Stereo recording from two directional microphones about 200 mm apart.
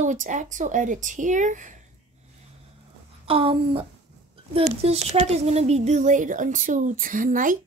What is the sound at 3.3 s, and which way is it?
Speech, 30° right (ahead or behind).